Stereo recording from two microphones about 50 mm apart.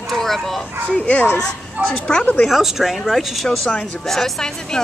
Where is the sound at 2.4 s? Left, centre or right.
Centre.